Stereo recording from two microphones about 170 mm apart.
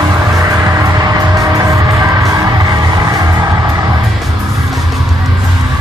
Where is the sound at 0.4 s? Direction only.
15° right (ahead or behind).